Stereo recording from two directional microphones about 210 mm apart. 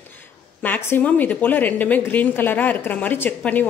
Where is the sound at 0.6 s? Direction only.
10° left (ahead or behind).